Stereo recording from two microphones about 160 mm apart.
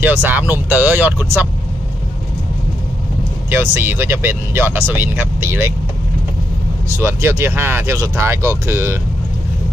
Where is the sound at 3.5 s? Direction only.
15° right (ahead or behind).